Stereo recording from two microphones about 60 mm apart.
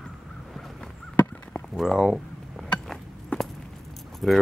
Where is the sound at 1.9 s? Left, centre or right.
Centre.